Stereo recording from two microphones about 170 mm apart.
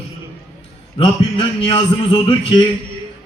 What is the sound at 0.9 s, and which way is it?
A man's voice, 30° left (ahead or behind).